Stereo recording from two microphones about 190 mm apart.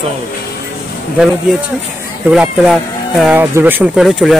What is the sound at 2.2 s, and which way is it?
Speech, 5° right (ahead or behind).